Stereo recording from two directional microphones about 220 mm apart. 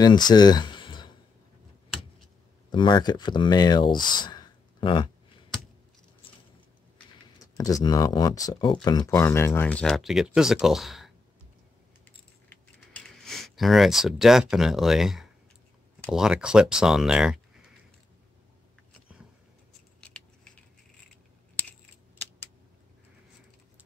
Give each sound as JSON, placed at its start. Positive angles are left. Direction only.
{"t": 0.0, "sound": "a sound", "side_deg": 20}
{"t": 2.7, "sound": "speech", "side_deg": 20}
{"t": 7.5, "sound": "speech", "side_deg": 15}
{"t": 12.9, "sound": "speech", "side_deg": 0}
{"t": 20.0, "sound": "scissors", "side_deg": 5}